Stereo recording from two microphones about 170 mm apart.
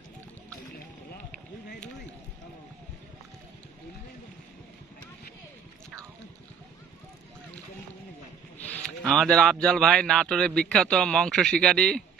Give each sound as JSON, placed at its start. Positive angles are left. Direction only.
{"t": 8.5, "sound": "speech", "side_deg": 10}